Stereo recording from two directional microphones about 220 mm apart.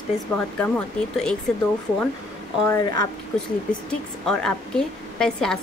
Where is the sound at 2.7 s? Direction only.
15° left (ahead or behind).